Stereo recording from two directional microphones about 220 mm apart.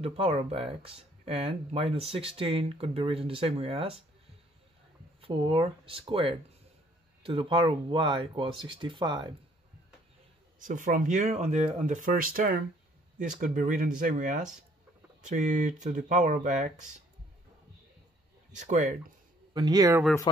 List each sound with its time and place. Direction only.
0.0 s speech: 25° right (ahead or behind)
5.2 s speech: 25° right (ahead or behind)
10.6 s speech: 35° right (ahead or behind)
18.6 s speech: 35° right (ahead or behind)
19.5 s speech: 20° right (ahead or behind)